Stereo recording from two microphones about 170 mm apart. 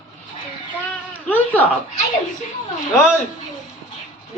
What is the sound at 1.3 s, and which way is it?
Speech, 10° left (ahead or behind).